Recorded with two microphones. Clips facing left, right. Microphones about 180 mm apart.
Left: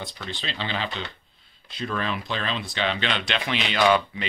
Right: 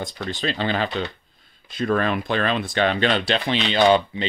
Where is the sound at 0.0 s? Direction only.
45° right (ahead or behind).